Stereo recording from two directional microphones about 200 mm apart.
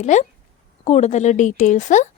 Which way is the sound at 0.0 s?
35° left (ahead or behind).